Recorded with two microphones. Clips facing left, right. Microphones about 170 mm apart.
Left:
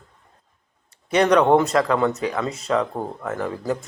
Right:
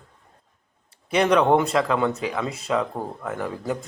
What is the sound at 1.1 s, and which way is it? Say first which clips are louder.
A man's voice: left 2 dB; 10° right (ahead or behind).